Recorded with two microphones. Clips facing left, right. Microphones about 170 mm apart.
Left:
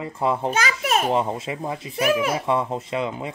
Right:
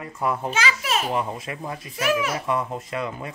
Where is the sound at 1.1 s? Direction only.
30° left (ahead or behind).